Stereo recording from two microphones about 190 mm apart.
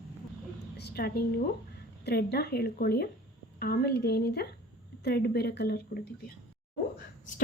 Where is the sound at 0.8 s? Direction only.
55° left (ahead or behind).